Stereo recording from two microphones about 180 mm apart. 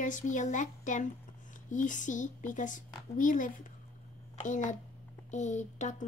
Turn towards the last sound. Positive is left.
turn(degrees=40)  # may be behind; listen again after turning